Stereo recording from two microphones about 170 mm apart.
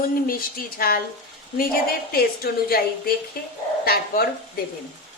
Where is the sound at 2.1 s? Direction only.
65° left (ahead or behind).